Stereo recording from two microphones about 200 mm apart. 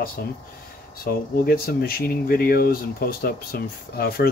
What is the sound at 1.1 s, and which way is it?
Speech, 50° left (ahead or behind).